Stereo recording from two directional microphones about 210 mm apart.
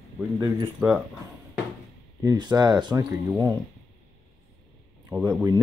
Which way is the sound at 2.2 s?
20° right (ahead or behind).